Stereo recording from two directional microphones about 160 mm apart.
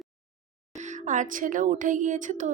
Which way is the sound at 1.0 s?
50° right (ahead or behind).